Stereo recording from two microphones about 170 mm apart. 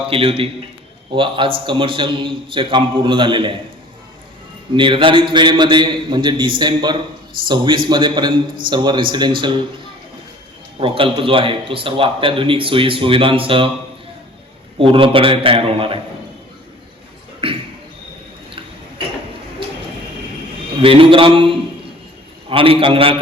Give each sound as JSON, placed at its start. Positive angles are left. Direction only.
{"t": 0.1, "sound": "a man's voice", "side_deg": -35}
{"t": 4.7, "sound": "a man's voice", "side_deg": -30}
{"t": 10.8, "sound": "a man's voice", "side_deg": -30}
{"t": 14.8, "sound": "a man's voice", "side_deg": -30}
{"t": 17.4, "sound": "a sound", "side_deg": -30}
{"t": 20.8, "sound": "a man's voice", "side_deg": -30}